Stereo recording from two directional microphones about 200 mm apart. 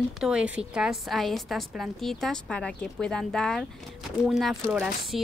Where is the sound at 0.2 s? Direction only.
5° right (ahead or behind).